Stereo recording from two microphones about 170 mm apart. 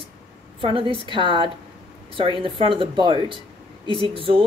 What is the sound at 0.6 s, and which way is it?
Speech, 30° right (ahead or behind).